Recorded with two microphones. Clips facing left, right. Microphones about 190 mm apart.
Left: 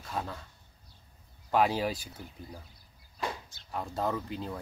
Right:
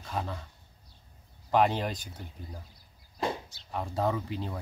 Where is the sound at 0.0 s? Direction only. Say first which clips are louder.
Right 1 dB; centre (ahead or behind).